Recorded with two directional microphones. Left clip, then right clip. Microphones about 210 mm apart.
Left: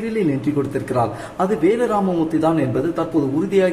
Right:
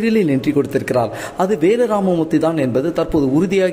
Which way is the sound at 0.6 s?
40° right (ahead or behind).